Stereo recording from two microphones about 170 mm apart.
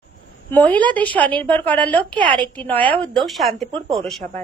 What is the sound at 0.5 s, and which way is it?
A woman's voice, 10° left (ahead or behind).